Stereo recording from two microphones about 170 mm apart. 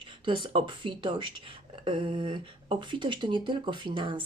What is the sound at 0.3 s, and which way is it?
Speech, 30° right (ahead or behind).